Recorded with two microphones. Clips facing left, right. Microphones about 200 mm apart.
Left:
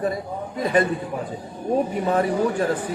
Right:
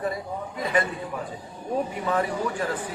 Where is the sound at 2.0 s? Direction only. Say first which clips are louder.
Left 5 dB; 35° left (ahead or behind).